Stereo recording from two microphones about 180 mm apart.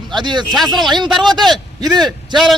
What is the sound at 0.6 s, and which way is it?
Speech, centre (ahead or behind).